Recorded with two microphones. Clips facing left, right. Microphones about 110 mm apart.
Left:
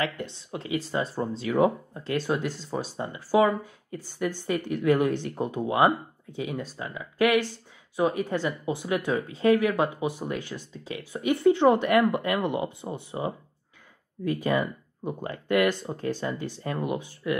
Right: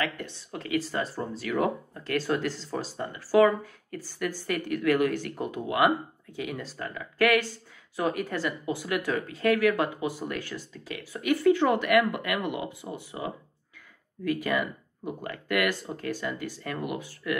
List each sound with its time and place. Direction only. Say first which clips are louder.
0.0 s speech: left 2 dB; 20° left (ahead or behind)